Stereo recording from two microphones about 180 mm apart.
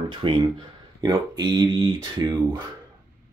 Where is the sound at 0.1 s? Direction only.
25° right (ahead or behind).